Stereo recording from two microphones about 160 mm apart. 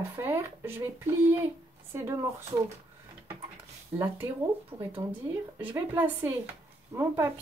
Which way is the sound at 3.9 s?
15° right (ahead or behind).